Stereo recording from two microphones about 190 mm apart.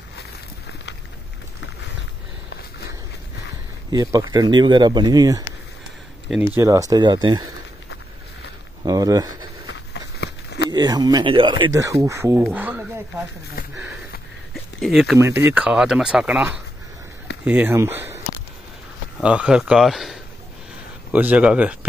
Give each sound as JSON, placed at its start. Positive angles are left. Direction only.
{"t": 3.9, "sound": "speech", "side_deg": -20}
{"t": 8.8, "sound": "speech", "side_deg": -20}
{"t": 10.2, "sound": "a sound", "side_deg": 60}
{"t": 10.7, "sound": "speech", "side_deg": -20}
{"t": 14.5, "sound": "a sound", "side_deg": 0}
{"t": 15.1, "sound": "speech", "side_deg": -15}
{"t": 19.2, "sound": "speech", "side_deg": -5}